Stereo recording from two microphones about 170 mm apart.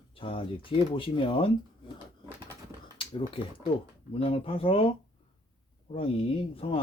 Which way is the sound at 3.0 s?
30° left (ahead or behind).